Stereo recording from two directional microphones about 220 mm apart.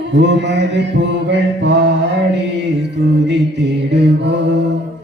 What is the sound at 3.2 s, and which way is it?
Mantra, 50° right (ahead or behind).